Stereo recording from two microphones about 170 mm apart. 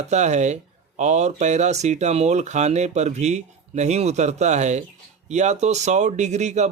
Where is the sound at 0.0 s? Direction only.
40° right (ahead or behind).